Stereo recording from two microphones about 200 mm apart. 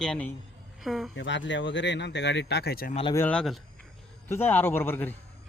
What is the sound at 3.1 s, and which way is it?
Speech, 10° left (ahead or behind).